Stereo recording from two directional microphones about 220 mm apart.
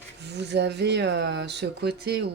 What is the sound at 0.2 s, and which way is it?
Speech, 50° right (ahead or behind).